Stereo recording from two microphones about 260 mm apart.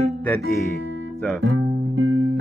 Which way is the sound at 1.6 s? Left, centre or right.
Right.